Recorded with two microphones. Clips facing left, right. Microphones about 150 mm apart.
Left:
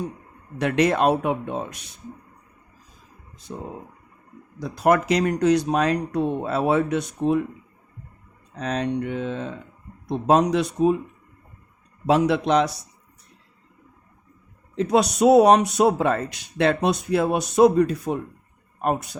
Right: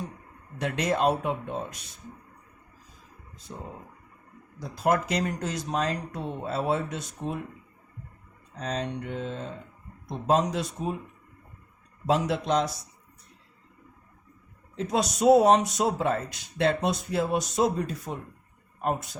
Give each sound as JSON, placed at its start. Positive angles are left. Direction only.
{"t": 0.6, "sound": "speech", "side_deg": 70}
{"t": 4.6, "sound": "speech", "side_deg": 75}
{"t": 8.5, "sound": "speech", "side_deg": 70}
{"t": 12.0, "sound": "speech", "side_deg": 70}
{"t": 14.8, "sound": "speech", "side_deg": 70}